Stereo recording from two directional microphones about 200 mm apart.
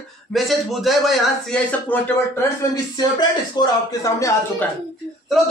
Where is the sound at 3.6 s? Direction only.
15° left (ahead or behind).